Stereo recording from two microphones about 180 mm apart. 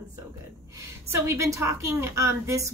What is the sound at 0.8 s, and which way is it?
A woman's voice, 15° right (ahead or behind).